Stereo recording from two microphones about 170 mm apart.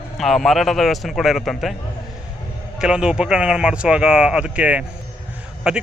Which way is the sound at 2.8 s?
5° right (ahead or behind).